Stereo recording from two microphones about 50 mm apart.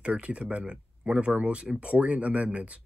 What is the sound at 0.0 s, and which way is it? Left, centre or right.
Speech, right.